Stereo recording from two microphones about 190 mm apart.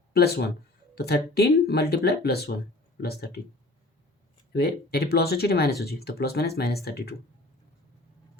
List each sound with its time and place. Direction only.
0.1 s speech: 60° left (ahead or behind)
4.5 s speech: 55° left (ahead or behind)